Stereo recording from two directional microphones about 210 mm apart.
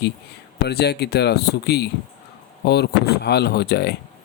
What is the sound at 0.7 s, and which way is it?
Speech, 50° left (ahead or behind).